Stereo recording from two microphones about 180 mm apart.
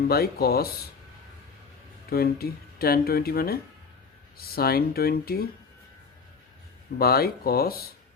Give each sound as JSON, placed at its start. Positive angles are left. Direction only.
{"t": 0.1, "sound": "speech", "side_deg": 60}
{"t": 2.0, "sound": "speech", "side_deg": 60}
{"t": 7.0, "sound": "speech", "side_deg": 60}